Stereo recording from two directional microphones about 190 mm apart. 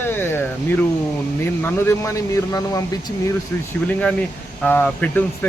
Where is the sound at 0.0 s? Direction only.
10° left (ahead or behind).